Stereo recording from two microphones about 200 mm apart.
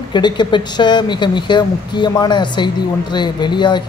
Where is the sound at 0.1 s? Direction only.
20° left (ahead or behind).